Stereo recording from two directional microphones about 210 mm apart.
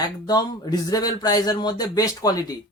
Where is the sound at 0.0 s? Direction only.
20° left (ahead or behind).